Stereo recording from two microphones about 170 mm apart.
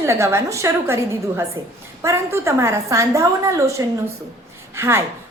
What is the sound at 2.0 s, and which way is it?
A woman's voice, 15° right (ahead or behind).